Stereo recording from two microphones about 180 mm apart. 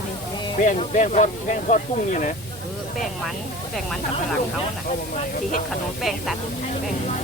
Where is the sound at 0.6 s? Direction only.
45° left (ahead or behind).